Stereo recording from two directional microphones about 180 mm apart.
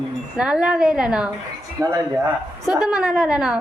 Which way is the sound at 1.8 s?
20° right (ahead or behind).